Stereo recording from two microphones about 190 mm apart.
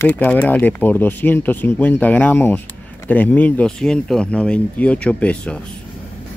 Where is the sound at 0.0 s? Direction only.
10° left (ahead or behind).